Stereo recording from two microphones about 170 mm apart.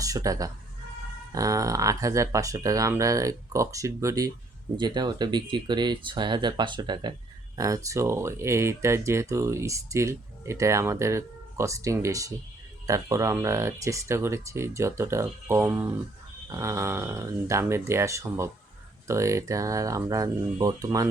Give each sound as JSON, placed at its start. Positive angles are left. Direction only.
{"t": 0.0, "sound": "speech", "side_deg": -20}